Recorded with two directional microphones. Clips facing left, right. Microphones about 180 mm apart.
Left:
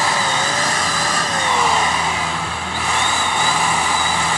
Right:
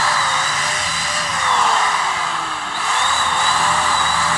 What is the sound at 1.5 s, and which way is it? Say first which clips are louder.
Vehicle: even; 10° left (ahead or behind).